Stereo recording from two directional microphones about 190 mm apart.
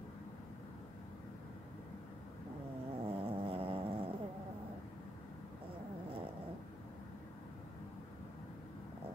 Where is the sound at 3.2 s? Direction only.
30° right (ahead or behind).